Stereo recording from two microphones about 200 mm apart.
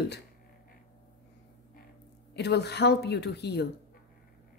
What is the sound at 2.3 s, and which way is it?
Speech, 55° left (ahead or behind).